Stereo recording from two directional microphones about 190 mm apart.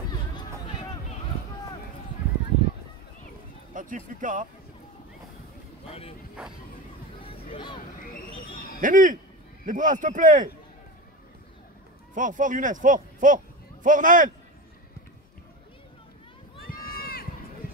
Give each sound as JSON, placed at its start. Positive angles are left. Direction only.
{"t": 3.7, "sound": "speech", "side_deg": -45}
{"t": 5.9, "sound": "speech", "side_deg": 30}
{"t": 7.2, "sound": "a sound", "side_deg": 30}
{"t": 8.8, "sound": "a man's voice", "side_deg": -45}
{"t": 12.1, "sound": "a man's voice", "side_deg": -45}
{"t": 16.6, "sound": "run", "side_deg": 50}